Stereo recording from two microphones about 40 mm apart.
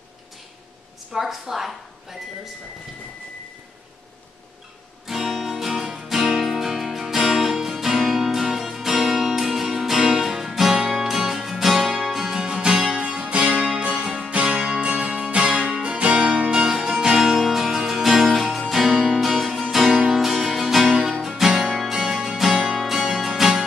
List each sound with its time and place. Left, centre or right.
1.1 s a woman's voice: centre
5.0 s guitar: centre
5.7 s music: centre
13.3 s music: right
16.7 s music: centre